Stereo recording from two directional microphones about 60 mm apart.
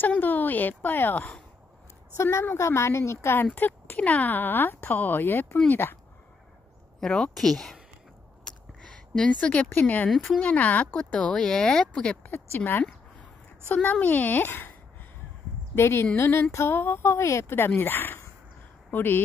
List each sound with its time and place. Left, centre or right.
0.2 s speech: left
2.2 s a woman's voice: left
3.5 s speech: left
7.0 s speech: centre
8.5 s a sound: centre; by 10.0 s left
10.4 s a child's voice: left
12.3 s speech: left
13.8 s a child's voice: left
15.7 s a woman's voice: left